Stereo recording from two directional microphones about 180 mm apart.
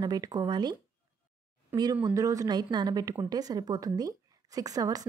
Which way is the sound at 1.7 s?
10° right (ahead or behind).